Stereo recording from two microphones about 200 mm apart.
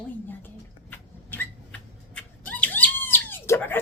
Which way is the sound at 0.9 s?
10° left (ahead or behind).